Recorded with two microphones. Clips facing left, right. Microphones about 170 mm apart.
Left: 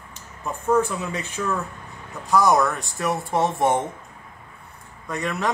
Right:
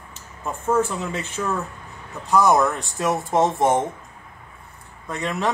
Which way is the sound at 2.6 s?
20° right (ahead or behind).